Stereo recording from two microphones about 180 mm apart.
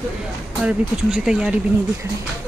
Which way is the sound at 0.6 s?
5° right (ahead or behind).